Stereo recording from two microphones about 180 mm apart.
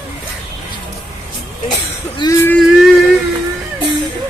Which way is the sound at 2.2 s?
25° left (ahead or behind).